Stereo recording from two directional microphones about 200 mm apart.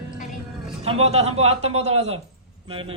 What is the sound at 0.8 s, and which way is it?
A man's voice, 30° right (ahead or behind).